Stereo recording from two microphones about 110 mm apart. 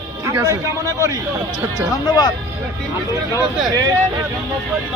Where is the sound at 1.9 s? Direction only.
40° left (ahead or behind).